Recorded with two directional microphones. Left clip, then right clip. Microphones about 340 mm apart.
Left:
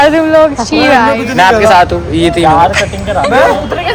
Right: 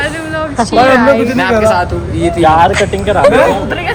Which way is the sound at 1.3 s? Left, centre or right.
Left.